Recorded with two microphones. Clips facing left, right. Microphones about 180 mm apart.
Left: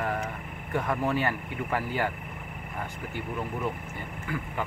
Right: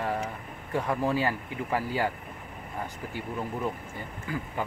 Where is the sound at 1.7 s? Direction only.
10° right (ahead or behind).